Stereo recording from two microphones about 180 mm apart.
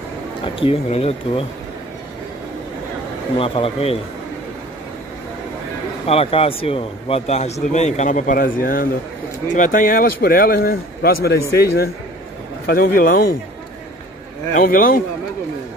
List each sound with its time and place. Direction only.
0.6 s a man's voice: 30° left (ahead or behind)
3.3 s a man's voice: 30° left (ahead or behind)
6.0 s a man's voice: 35° left (ahead or behind); by 13.4 s 55° left (ahead or behind)
14.5 s speech: 50° left (ahead or behind)